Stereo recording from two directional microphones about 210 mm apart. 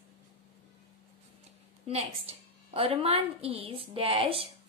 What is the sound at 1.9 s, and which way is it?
A woman's voice, 30° right (ahead or behind).